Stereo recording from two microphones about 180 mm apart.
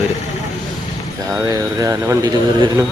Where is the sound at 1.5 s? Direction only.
20° right (ahead or behind).